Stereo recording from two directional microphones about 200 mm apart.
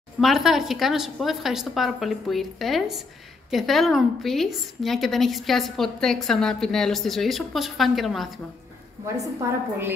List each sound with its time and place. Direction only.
0.2 s a woman's voice: centre (ahead or behind)
9.0 s a woman's voice: 15° right (ahead or behind)